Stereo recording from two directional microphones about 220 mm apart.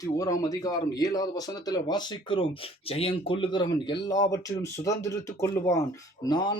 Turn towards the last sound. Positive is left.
turn(degrees=20)  # may be behind; listen again after turning